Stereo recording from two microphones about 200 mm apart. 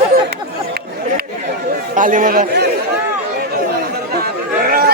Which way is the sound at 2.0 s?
40° right (ahead or behind).